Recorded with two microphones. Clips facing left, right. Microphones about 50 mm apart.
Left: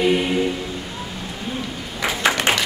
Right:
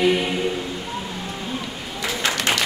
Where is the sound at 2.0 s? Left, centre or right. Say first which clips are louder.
Left 4 dB; left.